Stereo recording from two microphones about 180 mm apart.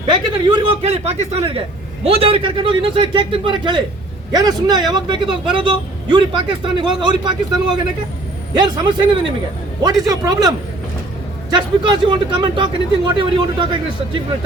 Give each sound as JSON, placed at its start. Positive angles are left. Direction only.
{"t": 0.0, "sound": "a man's voice", "side_deg": -25}
{"t": 11.5, "sound": "speech", "side_deg": -25}